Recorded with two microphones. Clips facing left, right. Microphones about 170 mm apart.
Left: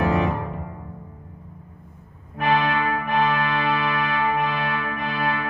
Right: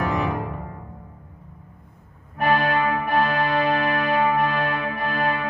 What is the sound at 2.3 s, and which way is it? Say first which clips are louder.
Music: right 1 dB; 45° right (ahead or behind).